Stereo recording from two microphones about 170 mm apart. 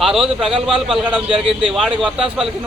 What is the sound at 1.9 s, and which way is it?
Speech, 5° right (ahead or behind).